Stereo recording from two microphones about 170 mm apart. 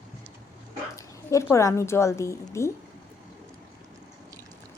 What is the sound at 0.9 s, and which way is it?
A woman's voice, 15° left (ahead or behind).